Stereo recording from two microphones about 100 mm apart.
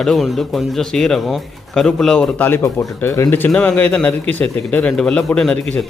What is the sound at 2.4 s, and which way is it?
Speech, 20° left (ahead or behind).